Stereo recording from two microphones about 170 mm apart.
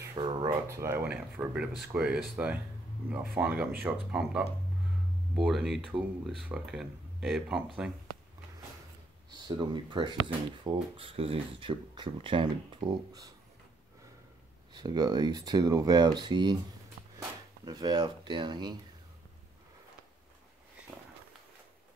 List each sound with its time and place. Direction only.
0.1 s a sound: 30° right (ahead or behind)
0.7 s speech: 15° right (ahead or behind)
9.5 s speech: 25° right (ahead or behind)
14.7 s speech: 25° right (ahead or behind)
17.6 s speech: 25° right (ahead or behind)